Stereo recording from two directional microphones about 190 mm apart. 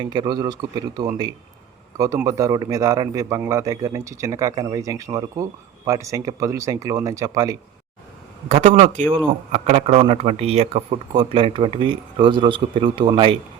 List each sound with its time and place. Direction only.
0.0 s a man's voice: 25° right (ahead or behind)
8.4 s a man's voice: 40° right (ahead or behind)